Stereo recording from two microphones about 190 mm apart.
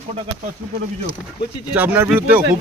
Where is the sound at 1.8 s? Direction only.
10° right (ahead or behind).